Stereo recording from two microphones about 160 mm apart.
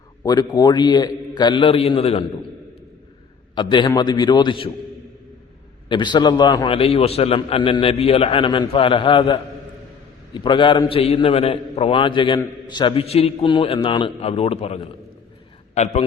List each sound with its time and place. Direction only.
0.2 s a man's voice: 25° left (ahead or behind)
3.5 s a man's voice: 30° left (ahead or behind)
5.9 s a man's voice: 30° left (ahead or behind)